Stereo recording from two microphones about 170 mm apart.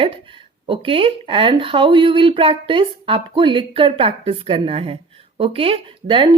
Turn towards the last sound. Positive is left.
turn(degrees=-30)  # may be behind; listen again after turning